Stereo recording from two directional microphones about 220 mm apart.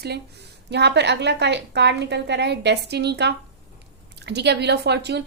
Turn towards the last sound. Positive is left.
turn(degrees=-50)  # may be behind; listen again after turning